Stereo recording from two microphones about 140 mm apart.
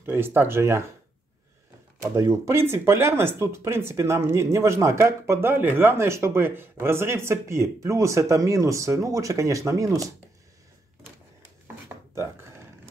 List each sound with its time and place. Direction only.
0.0 s speech: 15° right (ahead or behind)
2.1 s speech: 20° right (ahead or behind)
12.2 s a sound: 20° right (ahead or behind)